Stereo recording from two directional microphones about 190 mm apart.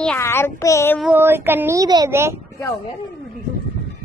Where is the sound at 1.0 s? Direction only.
10° right (ahead or behind).